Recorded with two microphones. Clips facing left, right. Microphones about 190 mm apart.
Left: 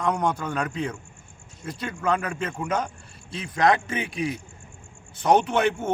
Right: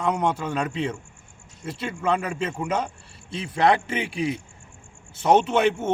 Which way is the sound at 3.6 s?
30° right (ahead or behind).